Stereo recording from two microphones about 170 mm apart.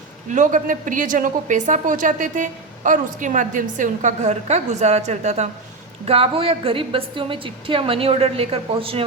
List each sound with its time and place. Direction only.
0.3 s a woman's voice: 50° right (ahead or behind)